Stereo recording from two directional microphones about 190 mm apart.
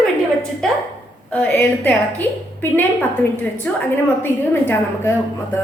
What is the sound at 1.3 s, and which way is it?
A woman's voice, 10° left (ahead or behind).